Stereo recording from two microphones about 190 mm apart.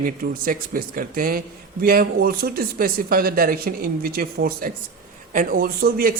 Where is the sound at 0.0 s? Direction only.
50° right (ahead or behind).